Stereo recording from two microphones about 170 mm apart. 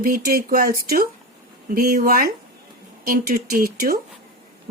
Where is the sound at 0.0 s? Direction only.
60° right (ahead or behind).